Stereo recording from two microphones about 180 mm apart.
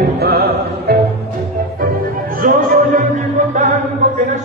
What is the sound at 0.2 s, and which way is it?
Music, 60° right (ahead or behind).